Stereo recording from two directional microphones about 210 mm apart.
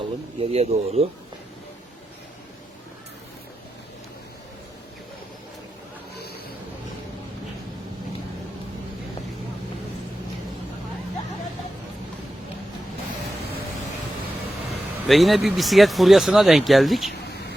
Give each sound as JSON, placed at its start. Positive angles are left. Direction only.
{"t": 0.3, "sound": "speech", "side_deg": -30}
{"t": 6.1, "sound": "a sound", "side_deg": 50}
{"t": 15.0, "sound": "speech", "side_deg": 0}